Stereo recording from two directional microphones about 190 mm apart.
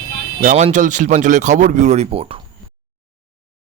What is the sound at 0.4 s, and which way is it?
Speech, 40° right (ahead or behind).